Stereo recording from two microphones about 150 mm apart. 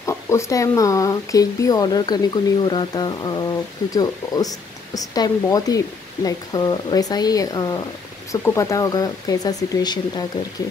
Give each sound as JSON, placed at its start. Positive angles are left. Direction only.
{"t": 0.0, "sound": "speech", "side_deg": 20}